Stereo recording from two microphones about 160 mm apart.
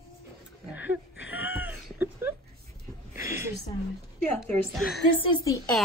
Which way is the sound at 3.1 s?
15° right (ahead or behind).